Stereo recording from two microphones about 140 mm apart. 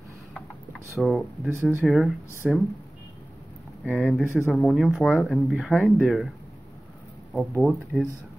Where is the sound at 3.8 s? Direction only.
5° right (ahead or behind).